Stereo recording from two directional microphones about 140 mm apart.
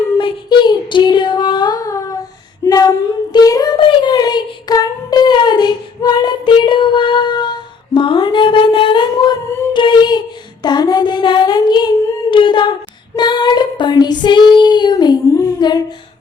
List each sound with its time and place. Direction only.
0.2 s child singing: 35° left (ahead or behind)
2.6 s female singing: 25° left (ahead or behind)
3.3 s child singing: 25° left (ahead or behind)
12.3 s a sound: 35° left (ahead or behind)
13.1 s female singing: 30° left (ahead or behind)